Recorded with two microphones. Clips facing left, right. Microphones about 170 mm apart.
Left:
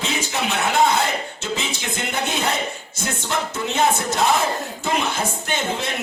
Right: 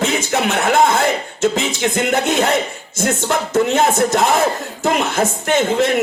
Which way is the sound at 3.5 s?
85° right.